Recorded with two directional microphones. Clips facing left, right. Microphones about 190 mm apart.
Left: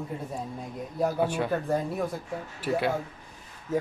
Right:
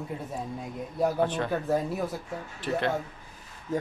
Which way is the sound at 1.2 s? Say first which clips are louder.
Even; 10° left (ahead or behind).